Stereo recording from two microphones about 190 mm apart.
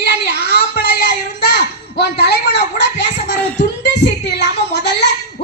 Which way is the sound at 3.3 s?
5° left (ahead or behind).